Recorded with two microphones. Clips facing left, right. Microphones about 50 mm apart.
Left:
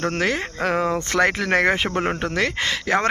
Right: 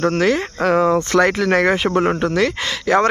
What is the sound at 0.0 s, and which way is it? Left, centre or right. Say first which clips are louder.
Speech: right 6 dB; centre.